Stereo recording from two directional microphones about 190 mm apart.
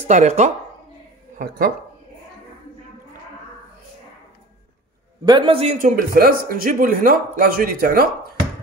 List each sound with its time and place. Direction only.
0.0 s speech: 40° right (ahead or behind)
5.2 s a man's voice: 25° right (ahead or behind); by 8.1 s 50° right (ahead or behind)